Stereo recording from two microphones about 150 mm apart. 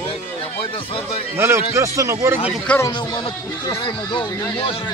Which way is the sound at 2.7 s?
30° left (ahead or behind).